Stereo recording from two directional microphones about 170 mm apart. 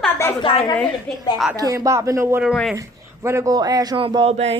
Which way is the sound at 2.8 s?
15° right (ahead or behind).